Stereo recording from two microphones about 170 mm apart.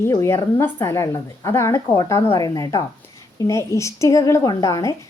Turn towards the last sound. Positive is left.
turn(degrees=20)  # may be behind; listen again after turning